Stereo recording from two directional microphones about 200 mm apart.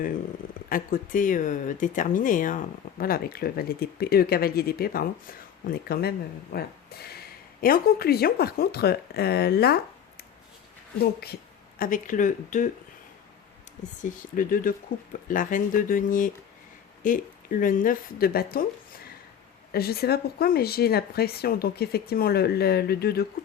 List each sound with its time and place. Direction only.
0.7 s speech: 45° left (ahead or behind)
11.0 s speech: 50° left (ahead or behind)
14.0 s a woman's voice: 40° left (ahead or behind)